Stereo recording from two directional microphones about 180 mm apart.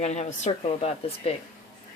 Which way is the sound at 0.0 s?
40° left (ahead or behind).